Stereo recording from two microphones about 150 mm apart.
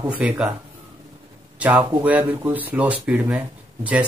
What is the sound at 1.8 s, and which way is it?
Speech, 30° right (ahead or behind).